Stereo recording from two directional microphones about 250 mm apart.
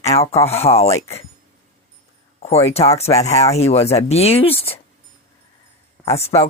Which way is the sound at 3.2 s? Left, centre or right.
Left.